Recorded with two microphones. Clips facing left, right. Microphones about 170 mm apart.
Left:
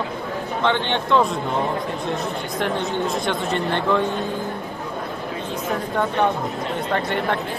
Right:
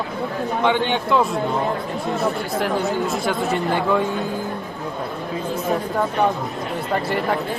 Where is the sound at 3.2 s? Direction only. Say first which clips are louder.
Right 2 dB; 5° right (ahead or behind).